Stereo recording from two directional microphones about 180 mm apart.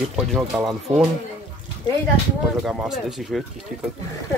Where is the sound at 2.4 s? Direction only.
Centre (ahead or behind).